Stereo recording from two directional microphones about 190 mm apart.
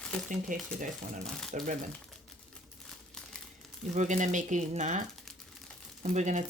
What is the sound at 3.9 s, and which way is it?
Speech, 40° right (ahead or behind).